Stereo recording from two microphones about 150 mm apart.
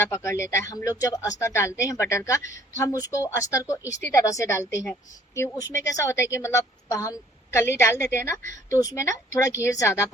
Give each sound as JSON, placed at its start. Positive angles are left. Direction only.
{"t": 0.0, "sound": "speech", "side_deg": 20}